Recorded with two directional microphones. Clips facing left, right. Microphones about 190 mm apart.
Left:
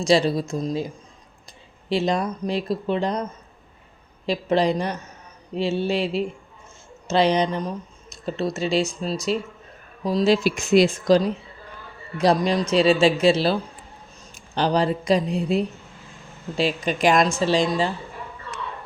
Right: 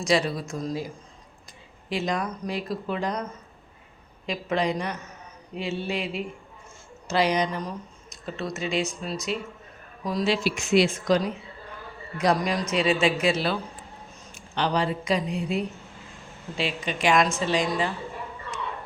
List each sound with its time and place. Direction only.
0.0 s speech: 30° left (ahead or behind)
1.9 s speech: 30° left (ahead or behind)
4.3 s speech: 30° left (ahead or behind)
10.3 s speech: 40° left (ahead or behind)